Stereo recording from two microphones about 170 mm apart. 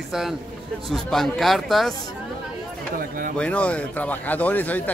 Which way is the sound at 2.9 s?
55° right (ahead or behind).